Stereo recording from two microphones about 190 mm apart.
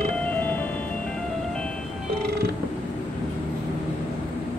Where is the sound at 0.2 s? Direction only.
10° left (ahead or behind).